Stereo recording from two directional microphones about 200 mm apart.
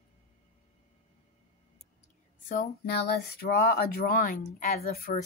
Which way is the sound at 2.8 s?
50° left (ahead or behind).